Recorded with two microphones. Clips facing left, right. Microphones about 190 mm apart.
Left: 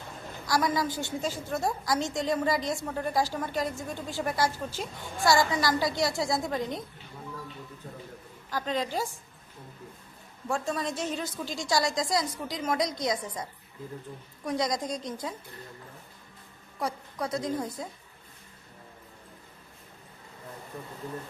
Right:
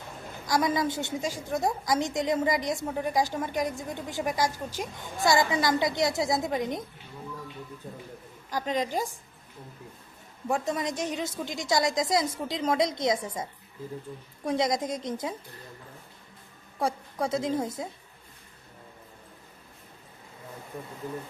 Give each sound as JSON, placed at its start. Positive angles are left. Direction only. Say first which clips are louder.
{"t": 0.4, "sound": "a woman's voice", "louder": "right 1 dB", "side_deg": -20}
{"t": 1.2, "sound": "a woman's voice", "louder": "right 1 dB", "side_deg": -15}
{"t": 8.4, "sound": "a woman's voice", "louder": "right 2 dB", "side_deg": -15}
{"t": 10.5, "sound": "a woman's voice", "louder": "right 2 dB", "side_deg": -20}
{"t": 16.8, "sound": "a woman's voice", "louder": "right 4 dB", "side_deg": -25}